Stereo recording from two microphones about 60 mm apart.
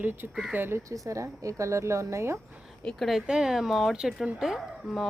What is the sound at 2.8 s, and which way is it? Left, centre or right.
Speech, centre.